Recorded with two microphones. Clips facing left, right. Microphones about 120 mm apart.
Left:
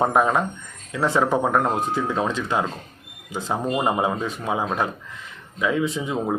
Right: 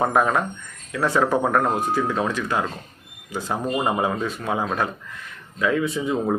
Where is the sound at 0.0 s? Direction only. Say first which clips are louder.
Left 1 dB; 20° left (ahead or behind).